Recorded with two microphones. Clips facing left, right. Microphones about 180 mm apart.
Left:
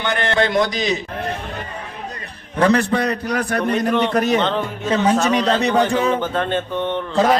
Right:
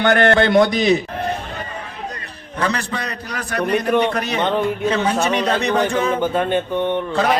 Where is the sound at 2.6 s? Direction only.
55° left (ahead or behind).